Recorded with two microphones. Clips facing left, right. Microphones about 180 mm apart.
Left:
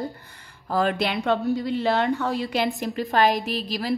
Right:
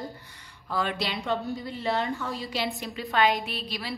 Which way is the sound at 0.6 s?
45° left (ahead or behind).